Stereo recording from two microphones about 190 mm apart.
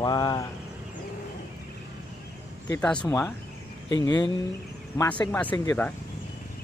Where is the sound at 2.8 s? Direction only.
5° left (ahead or behind).